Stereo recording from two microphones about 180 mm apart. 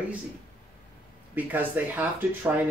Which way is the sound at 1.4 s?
10° right (ahead or behind).